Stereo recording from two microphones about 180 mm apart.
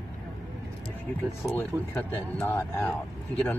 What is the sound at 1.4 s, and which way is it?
Speech, 15° left (ahead or behind).